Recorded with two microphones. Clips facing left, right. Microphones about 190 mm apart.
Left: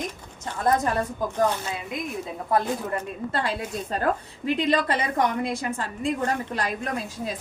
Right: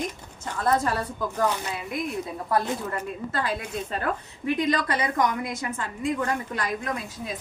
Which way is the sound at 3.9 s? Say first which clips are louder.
Left 6 dB; 40° left (ahead or behind).